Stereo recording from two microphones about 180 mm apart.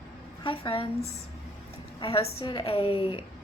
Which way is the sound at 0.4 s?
30° left (ahead or behind).